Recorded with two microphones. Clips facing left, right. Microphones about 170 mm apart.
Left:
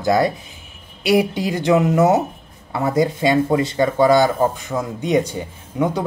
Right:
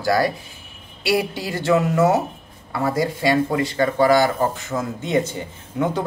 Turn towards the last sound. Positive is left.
turn(degrees=10)  # may be behind; listen again after turning